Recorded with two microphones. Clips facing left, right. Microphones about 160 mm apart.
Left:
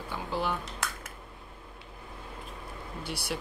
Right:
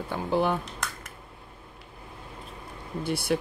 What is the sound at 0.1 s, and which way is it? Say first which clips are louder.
Speech: right 7 dB; 55° right (ahead or behind).